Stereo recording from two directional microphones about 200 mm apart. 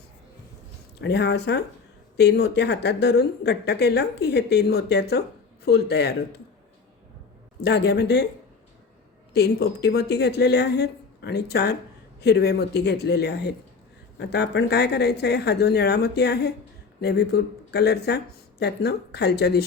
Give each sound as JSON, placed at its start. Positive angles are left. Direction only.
{"t": 0.9, "sound": "speech", "side_deg": 55}
{"t": 7.6, "sound": "speech", "side_deg": 55}
{"t": 9.3, "sound": "speech", "side_deg": 55}